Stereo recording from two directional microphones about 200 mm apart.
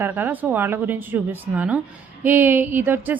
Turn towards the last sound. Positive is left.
turn(degrees=-10)  # may be behind; listen again after turning